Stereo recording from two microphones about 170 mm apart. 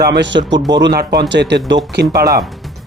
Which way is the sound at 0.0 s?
80° right.